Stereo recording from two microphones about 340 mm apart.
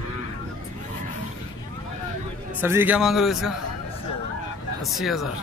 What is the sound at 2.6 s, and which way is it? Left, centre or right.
Speech, centre.